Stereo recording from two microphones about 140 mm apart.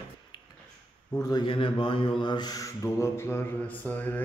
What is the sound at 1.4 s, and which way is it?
Mantra, 40° left (ahead or behind).